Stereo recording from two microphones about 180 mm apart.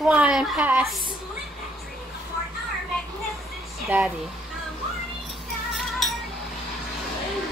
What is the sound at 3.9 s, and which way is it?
Speech, 10° right (ahead or behind).